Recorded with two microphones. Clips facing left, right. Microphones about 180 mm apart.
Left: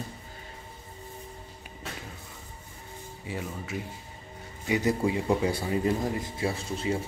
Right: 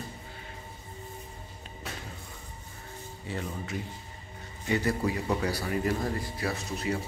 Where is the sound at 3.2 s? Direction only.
10° left (ahead or behind).